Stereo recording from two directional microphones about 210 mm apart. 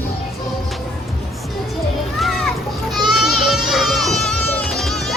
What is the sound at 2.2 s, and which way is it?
Children playing, centre (ahead or behind).